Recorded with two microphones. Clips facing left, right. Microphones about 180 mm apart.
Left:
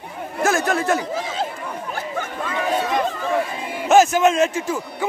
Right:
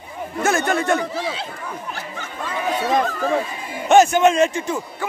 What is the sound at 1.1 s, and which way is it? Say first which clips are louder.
Chatter: left 1 dB; 45° left (ahead or behind).